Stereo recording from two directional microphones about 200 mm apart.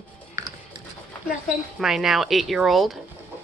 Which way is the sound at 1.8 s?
Centre (ahead or behind).